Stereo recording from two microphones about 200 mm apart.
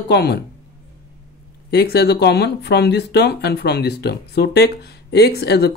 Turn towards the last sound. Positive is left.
turn(degrees=55)  # may be behind; listen again after turning